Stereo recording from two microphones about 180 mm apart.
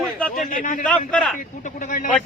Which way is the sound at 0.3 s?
45° left (ahead or behind).